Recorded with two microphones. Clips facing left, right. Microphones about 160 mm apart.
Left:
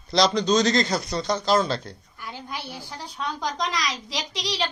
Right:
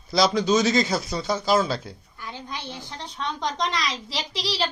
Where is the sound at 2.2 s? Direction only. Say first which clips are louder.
Even; 10° left (ahead or behind).